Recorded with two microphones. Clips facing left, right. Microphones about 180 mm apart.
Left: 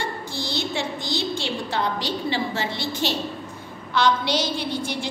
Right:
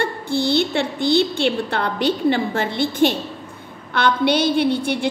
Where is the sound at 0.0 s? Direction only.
60° right (ahead or behind).